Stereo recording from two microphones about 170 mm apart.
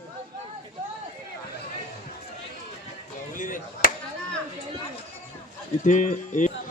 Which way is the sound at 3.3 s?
50° left (ahead or behind).